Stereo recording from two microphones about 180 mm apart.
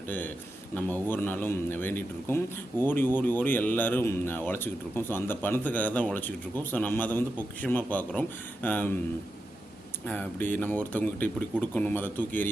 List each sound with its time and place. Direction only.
0.7 s speech: 10° left (ahead or behind)
10.1 s speech: 10° left (ahead or behind)